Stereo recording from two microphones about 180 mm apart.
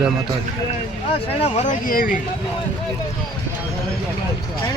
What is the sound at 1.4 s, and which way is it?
Speech, 40° left (ahead or behind).